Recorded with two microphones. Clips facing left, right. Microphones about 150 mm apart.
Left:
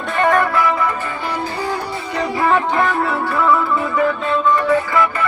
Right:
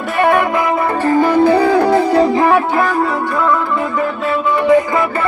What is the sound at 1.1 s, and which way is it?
Music, 45° right (ahead or behind).